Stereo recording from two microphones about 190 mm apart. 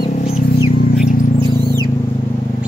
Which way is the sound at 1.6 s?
20° right (ahead or behind).